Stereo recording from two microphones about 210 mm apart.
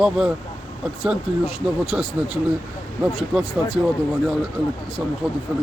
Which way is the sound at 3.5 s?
20° left (ahead or behind).